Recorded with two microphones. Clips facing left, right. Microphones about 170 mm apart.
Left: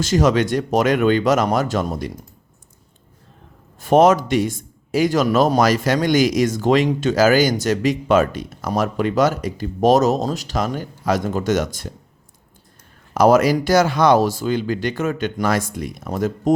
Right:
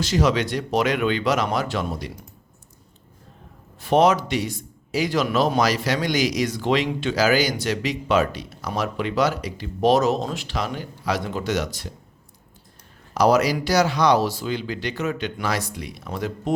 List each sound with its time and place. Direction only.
0.0 s speech: 45° left (ahead or behind)
3.8 s speech: 45° left (ahead or behind)
13.1 s speech: 50° left (ahead or behind)